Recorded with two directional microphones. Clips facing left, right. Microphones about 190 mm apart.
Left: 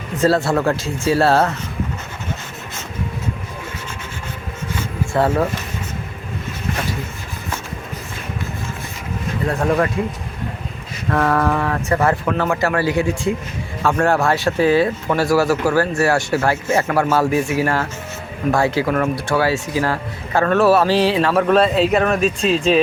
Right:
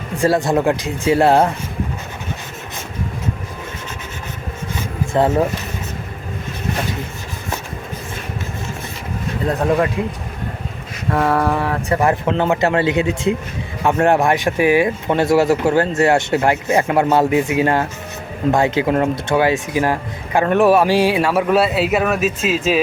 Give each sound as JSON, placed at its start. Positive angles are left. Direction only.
{"t": 0.2, "sound": "speech", "side_deg": -15}
{"t": 5.1, "sound": "speech", "side_deg": -20}
{"t": 9.5, "sound": "speech", "side_deg": -20}
{"t": 11.1, "sound": "speech", "side_deg": -15}